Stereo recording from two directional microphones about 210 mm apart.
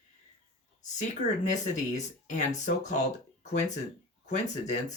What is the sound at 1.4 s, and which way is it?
Speech, 35° left (ahead or behind).